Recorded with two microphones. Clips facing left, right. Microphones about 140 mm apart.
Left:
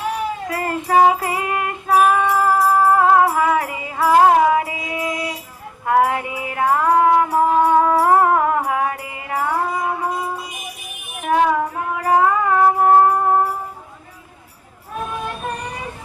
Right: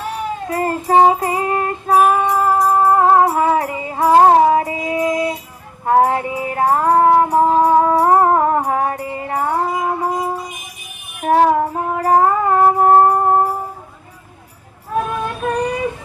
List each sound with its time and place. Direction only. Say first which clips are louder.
0.4 s music: right 4 dB; 35° right (ahead or behind)
11.2 s child singing: right 4 dB; 35° right (ahead or behind)
11.7 s music: right 3 dB; 35° right (ahead or behind)